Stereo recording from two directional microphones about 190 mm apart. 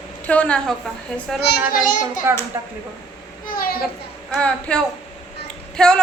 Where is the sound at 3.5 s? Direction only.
50° left (ahead or behind).